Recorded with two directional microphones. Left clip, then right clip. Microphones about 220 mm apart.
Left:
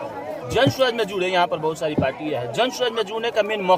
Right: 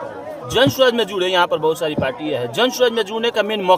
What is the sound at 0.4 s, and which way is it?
Speech, 45° right (ahead or behind).